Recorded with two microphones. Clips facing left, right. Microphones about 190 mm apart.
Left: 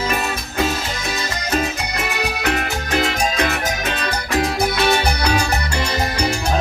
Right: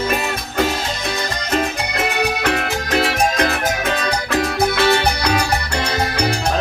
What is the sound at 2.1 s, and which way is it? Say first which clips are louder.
Music: right 1 dB; 60° right (ahead or behind).